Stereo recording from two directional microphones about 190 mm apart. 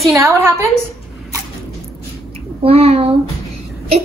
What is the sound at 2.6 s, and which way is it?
Speech, 30° right (ahead or behind).